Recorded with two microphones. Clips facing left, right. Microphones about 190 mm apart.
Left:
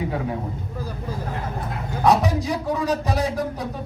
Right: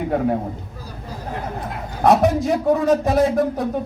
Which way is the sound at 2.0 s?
55° right (ahead or behind).